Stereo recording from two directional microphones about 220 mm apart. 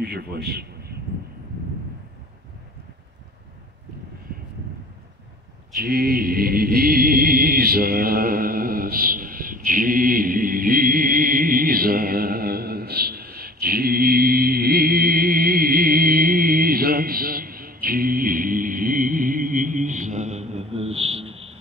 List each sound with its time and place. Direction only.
0.0 s a man's voice: 45° right (ahead or behind)
5.8 s music: 45° right (ahead or behind); by 21.5 s 25° right (ahead or behind)